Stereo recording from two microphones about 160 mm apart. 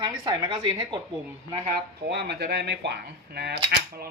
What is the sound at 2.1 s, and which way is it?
Speech, 90° right.